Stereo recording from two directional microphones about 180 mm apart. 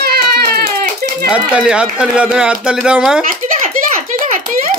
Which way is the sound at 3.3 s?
45° right (ahead or behind).